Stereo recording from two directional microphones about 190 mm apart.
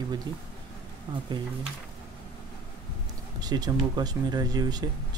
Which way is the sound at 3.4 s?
20° right (ahead or behind).